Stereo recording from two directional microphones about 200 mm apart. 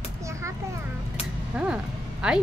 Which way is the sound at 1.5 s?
5° right (ahead or behind).